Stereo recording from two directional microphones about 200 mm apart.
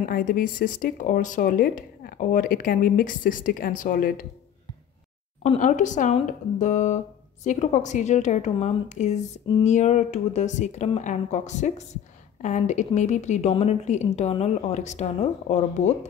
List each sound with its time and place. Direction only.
0.1 s speech: 45° left (ahead or behind)
5.4 s a woman's voice: 35° left (ahead or behind)